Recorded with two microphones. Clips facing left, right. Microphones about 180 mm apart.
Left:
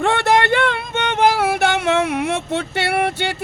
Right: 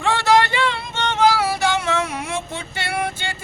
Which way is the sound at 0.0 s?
55° left (ahead or behind).